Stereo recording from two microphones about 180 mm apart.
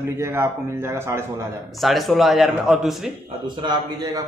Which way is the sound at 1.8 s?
Centre (ahead or behind).